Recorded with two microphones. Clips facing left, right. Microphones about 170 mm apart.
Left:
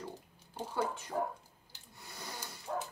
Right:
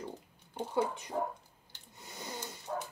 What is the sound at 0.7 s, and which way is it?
Speech, 15° right (ahead or behind).